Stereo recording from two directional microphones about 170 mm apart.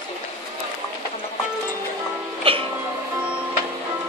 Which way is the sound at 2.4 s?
30° right (ahead or behind).